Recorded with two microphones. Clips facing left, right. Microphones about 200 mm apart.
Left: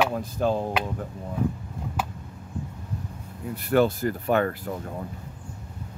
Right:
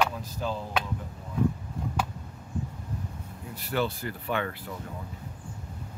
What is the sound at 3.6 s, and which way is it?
Speech, 50° left (ahead or behind).